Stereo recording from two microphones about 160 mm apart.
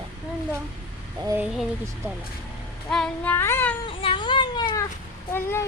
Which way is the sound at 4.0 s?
30° left (ahead or behind).